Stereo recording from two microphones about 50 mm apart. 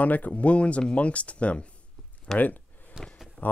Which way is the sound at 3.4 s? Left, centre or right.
Left.